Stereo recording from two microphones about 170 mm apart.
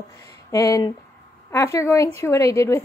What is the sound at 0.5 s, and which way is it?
A woman's voice, 20° left (ahead or behind).